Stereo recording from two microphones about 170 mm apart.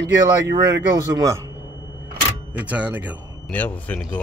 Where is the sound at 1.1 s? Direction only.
20° right (ahead or behind).